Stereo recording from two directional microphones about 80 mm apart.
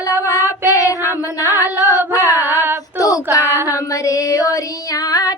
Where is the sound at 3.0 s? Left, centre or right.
Left.